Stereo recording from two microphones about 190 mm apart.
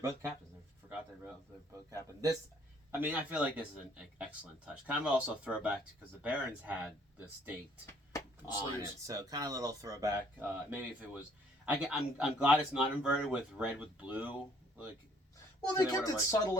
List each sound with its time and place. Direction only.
0.0 s speech: 15° right (ahead or behind)
3.0 s speech: 10° right (ahead or behind)
8.1 s a sound: 20° left (ahead or behind)
9.0 s speech: 20° right (ahead or behind)
15.7 s speech: 20° left (ahead or behind)